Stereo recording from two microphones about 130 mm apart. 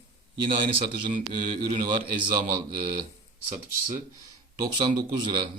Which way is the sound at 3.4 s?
90° right.